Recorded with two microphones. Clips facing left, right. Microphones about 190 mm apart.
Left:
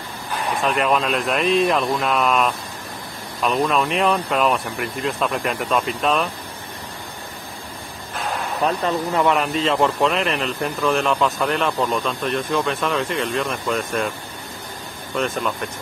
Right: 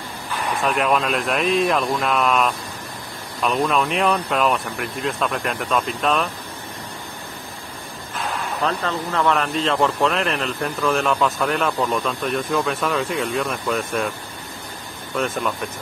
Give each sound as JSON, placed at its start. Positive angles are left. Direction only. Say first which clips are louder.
{"t": 0.7, "sound": "speech", "louder": "even", "side_deg": 0}
{"t": 8.6, "sound": "speech", "louder": "left 4 dB", "side_deg": 15}
{"t": 9.4, "sound": "speech", "louder": "left 1 dB", "side_deg": 0}
{"t": 15.1, "sound": "speech", "louder": "even", "side_deg": 0}